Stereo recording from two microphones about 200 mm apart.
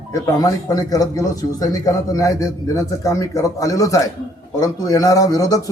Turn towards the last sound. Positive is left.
turn(degrees=15)  # may be behind; listen again after turning